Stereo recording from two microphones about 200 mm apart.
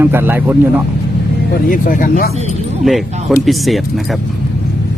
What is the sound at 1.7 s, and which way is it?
Speech, 45° left (ahead or behind).